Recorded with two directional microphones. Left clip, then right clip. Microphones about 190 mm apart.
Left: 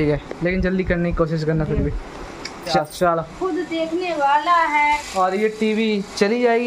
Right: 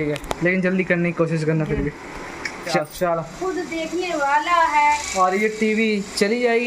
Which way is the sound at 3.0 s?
15° left (ahead or behind).